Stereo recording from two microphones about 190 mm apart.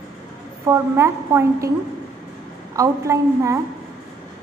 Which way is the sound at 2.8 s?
15° right (ahead or behind).